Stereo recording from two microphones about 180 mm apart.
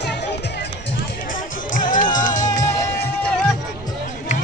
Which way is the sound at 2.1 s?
45° left (ahead or behind).